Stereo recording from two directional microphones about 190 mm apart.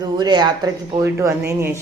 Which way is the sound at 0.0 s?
20° right (ahead or behind).